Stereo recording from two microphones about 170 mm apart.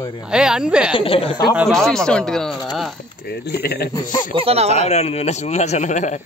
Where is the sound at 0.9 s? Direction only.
35° left (ahead or behind).